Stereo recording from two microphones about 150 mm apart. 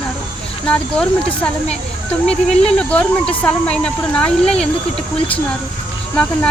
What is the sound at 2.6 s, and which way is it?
Speech, 5° left (ahead or behind).